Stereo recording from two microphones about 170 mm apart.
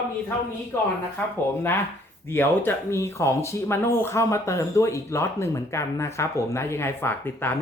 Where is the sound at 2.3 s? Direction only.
15° left (ahead or behind).